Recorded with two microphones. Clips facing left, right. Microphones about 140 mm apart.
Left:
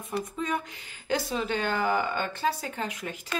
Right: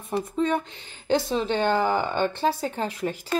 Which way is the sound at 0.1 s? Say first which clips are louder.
Right 6 dB; 30° right (ahead or behind).